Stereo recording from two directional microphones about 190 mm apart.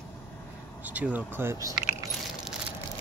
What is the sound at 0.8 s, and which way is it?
Speech, 10° right (ahead or behind).